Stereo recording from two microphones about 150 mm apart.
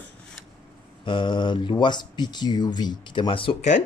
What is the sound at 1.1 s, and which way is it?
Speech, 30° left (ahead or behind).